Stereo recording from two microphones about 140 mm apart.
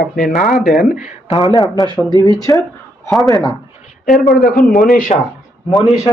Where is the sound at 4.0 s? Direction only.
75° left (ahead or behind).